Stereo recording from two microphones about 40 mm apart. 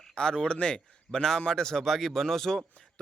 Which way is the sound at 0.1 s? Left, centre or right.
Centre.